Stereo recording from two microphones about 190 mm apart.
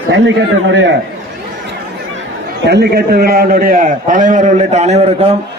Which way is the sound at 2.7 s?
60° right (ahead or behind).